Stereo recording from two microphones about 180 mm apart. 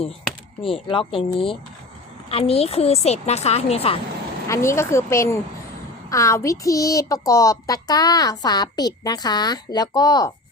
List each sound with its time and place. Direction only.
0.6 s a woman's voice: 30° left (ahead or behind)
4.4 s a woman's voice: 15° left (ahead or behind)